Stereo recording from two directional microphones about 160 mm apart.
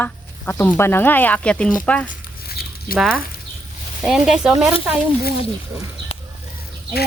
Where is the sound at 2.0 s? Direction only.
70° left (ahead or behind).